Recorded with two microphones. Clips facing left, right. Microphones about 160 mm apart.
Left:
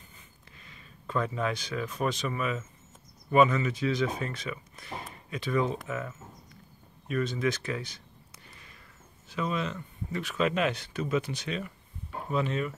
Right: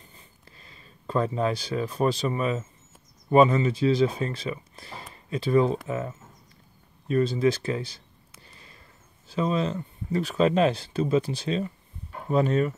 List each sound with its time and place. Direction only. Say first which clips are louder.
0.5 s speech: even; 35° right (ahead or behind)
9.3 s speech: right 6 dB; 30° right (ahead or behind)
12.3 s speech: right 7 dB; 40° right (ahead or behind)